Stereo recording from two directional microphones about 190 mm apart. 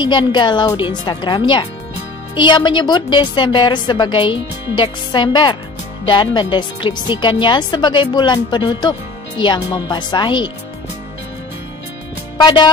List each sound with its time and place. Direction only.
0.0 s a woman's voice: 25° left (ahead or behind)